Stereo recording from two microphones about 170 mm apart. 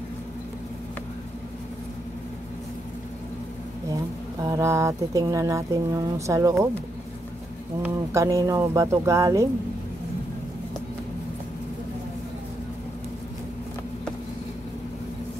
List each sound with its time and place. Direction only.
4.4 s speech: 20° right (ahead or behind)
7.8 s speech: 15° right (ahead or behind)